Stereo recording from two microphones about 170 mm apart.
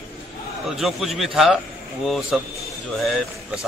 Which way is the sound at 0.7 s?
Centre (ahead or behind).